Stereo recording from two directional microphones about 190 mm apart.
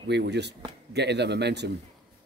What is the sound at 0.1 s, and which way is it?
Speech, 65° right (ahead or behind).